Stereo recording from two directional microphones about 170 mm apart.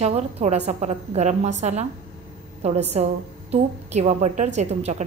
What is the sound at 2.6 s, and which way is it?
A woman's voice, 40° right (ahead or behind).